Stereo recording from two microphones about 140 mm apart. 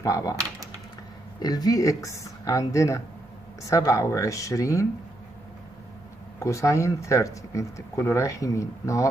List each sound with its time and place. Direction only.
0.0 s speech: 25° left (ahead or behind)
1.4 s speech: 25° left (ahead or behind)
6.4 s speech: 20° left (ahead or behind)